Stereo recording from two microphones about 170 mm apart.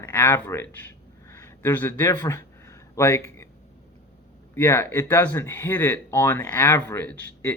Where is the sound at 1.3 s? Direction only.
15° left (ahead or behind).